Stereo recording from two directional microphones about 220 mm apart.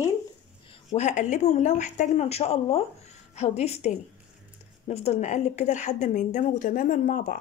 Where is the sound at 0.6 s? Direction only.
30° left (ahead or behind).